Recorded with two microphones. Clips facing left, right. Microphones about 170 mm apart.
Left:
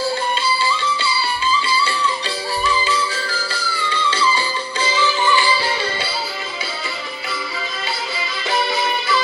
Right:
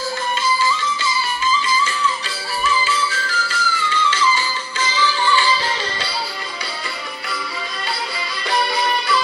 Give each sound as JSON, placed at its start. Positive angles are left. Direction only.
{"t": 2.6, "sound": "music", "side_deg": 35}
{"t": 5.0, "sound": "music", "side_deg": 15}
{"t": 8.4, "sound": "music", "side_deg": 0}